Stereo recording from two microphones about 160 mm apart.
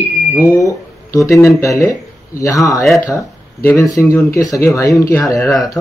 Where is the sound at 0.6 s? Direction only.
20° left (ahead or behind).